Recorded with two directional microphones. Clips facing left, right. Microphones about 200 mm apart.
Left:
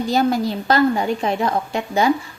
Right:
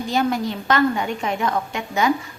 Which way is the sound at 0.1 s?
35° left (ahead or behind).